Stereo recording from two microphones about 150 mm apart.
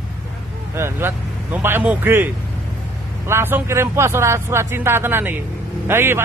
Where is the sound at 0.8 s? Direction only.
15° right (ahead or behind).